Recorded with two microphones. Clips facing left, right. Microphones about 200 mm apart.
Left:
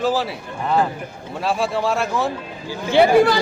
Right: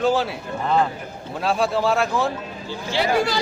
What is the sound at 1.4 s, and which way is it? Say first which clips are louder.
Speech: even; centre (ahead or behind).